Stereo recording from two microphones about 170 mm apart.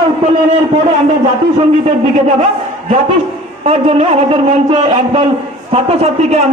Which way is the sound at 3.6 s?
40° right (ahead or behind).